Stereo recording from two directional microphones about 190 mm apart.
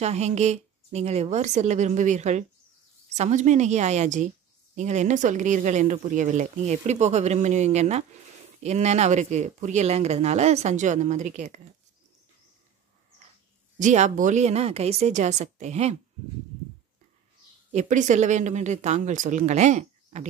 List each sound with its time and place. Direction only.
0.0 s speech: 35° right (ahead or behind)
13.7 s speech: 40° right (ahead or behind)
17.7 s speech: 40° right (ahead or behind)